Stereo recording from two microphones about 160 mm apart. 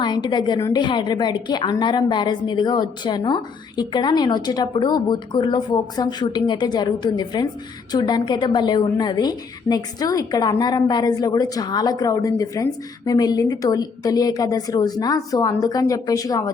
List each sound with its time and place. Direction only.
0.0 s a woman's voice: 30° left (ahead or behind)